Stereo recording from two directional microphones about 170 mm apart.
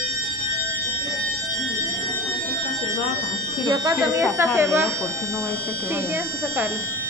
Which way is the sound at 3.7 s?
20° right (ahead or behind).